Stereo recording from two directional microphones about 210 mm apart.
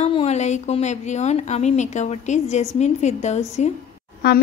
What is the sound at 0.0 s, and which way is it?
A woman's voice, 30° left (ahead or behind).